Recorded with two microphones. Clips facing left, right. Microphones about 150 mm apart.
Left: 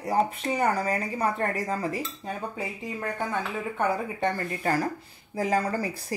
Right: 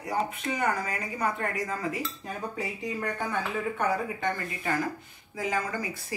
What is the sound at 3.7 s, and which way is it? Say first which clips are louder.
A woman's voice: left 4 dB; 30° left (ahead or behind).